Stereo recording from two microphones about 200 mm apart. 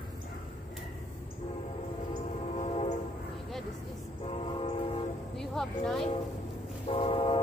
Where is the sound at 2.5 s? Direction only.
30° left (ahead or behind).